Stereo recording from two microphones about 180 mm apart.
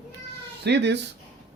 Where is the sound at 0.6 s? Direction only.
70° right (ahead or behind).